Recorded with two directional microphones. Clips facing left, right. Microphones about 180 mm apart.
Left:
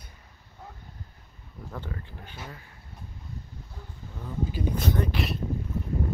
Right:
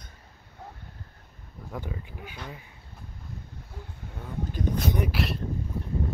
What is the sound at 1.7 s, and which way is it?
Speech, 10° right (ahead or behind).